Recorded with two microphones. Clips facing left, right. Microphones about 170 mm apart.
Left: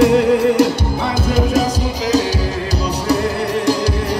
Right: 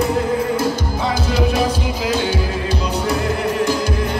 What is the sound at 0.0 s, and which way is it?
Music, 75° left (ahead or behind).